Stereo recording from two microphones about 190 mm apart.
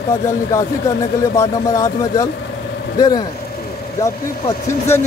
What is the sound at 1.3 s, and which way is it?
Speech, 15° left (ahead or behind).